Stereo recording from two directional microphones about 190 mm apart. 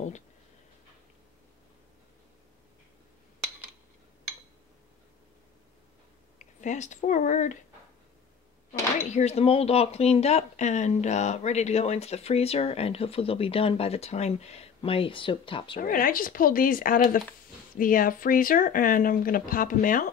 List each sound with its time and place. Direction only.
6.3 s speech: 40° left (ahead or behind)
8.9 s speech: 35° left (ahead or behind)
15.8 s speech: 50° left (ahead or behind)